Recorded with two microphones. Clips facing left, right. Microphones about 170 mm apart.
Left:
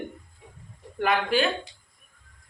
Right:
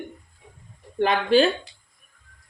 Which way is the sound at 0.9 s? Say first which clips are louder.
Right 5 dB; 30° right (ahead or behind).